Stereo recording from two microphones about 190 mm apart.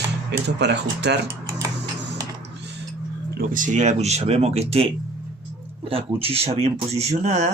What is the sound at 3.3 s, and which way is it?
Speech, 45° right (ahead or behind).